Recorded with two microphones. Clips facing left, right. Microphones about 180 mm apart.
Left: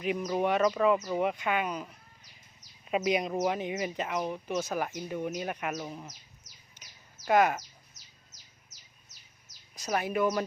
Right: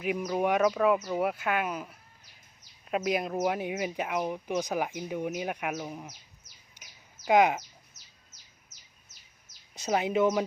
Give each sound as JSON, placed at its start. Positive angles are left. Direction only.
{"t": 0.0, "sound": "speech", "side_deg": -5}
{"t": 6.8, "sound": "bird", "side_deg": -10}
{"t": 7.3, "sound": "speech", "side_deg": -15}
{"t": 9.7, "sound": "speech", "side_deg": -25}